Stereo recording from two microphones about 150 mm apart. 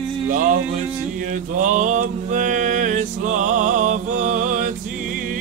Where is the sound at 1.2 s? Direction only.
60° right (ahead or behind).